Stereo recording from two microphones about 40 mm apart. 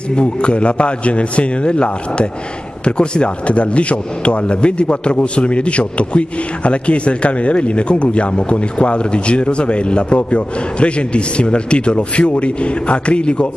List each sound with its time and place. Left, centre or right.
0.1 s speech: left